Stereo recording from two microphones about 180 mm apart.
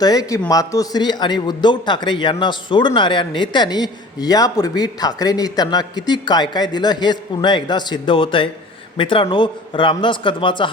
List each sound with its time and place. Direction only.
0.0 s a man's voice: 20° left (ahead or behind)